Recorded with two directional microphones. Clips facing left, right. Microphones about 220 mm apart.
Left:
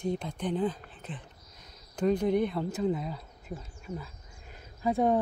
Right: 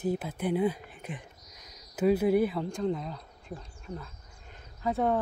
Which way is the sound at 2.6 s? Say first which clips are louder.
Left 1 dB; 5° left (ahead or behind).